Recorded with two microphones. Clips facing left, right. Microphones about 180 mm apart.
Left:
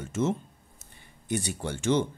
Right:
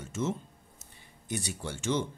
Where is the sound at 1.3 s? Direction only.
55° left (ahead or behind).